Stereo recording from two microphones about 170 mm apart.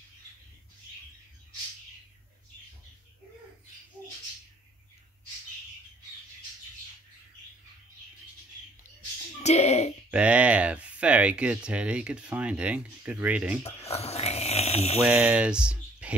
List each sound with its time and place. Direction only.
9.4 s a child's voice: 40° left (ahead or behind)
10.1 s speech: 5° right (ahead or behind)
13.7 s speech: 35° left (ahead or behind)
15.0 s speech: 10° right (ahead or behind)